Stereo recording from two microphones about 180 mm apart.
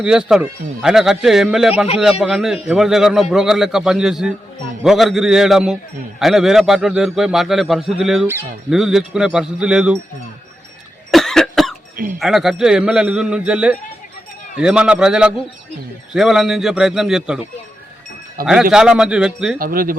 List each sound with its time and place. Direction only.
0.0 s a man's voice: 5° right (ahead or behind)
11.1 s cough: centre (ahead or behind)
12.2 s a man's voice: centre (ahead or behind)
18.4 s speech: 50° right (ahead or behind)
18.7 s a man's voice: 5° right (ahead or behind)
19.5 s speech: 55° right (ahead or behind)